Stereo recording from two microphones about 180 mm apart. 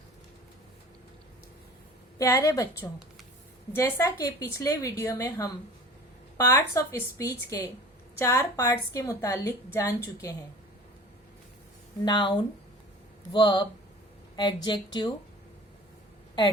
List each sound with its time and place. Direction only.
2.1 s a woman's voice: 15° left (ahead or behind)
3.8 s a woman's voice: 15° left (ahead or behind)
12.0 s speech: 25° left (ahead or behind)